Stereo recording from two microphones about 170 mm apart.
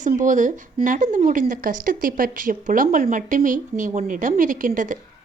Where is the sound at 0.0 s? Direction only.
50° right (ahead or behind).